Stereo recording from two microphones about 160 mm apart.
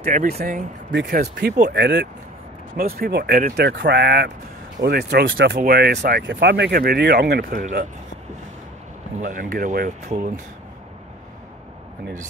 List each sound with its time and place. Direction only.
0.0 s speech: 60° right (ahead or behind)
0.9 s speech: 85° right
2.8 s speech: 70° right (ahead or behind)
9.2 s speech: 60° right (ahead or behind)